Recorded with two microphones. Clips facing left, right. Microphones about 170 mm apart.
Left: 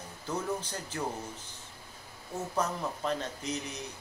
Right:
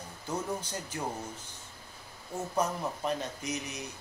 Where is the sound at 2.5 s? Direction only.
10° right (ahead or behind).